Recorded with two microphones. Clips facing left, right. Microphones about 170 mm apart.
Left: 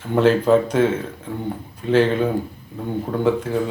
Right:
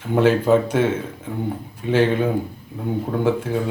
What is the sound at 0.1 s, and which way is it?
Speech, 10° right (ahead or behind).